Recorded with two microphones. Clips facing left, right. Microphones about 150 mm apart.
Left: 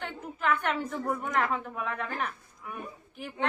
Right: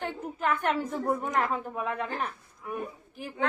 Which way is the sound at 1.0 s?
35° right (ahead or behind).